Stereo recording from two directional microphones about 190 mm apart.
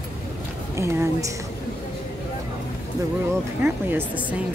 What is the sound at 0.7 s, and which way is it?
Speech, 15° right (ahead or behind).